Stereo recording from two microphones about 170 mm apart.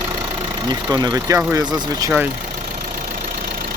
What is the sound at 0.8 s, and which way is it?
Speech, 20° right (ahead or behind).